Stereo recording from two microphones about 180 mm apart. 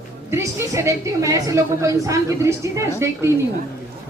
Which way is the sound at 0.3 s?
15° right (ahead or behind).